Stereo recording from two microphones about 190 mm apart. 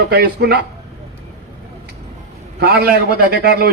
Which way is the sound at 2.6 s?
50° right (ahead or behind).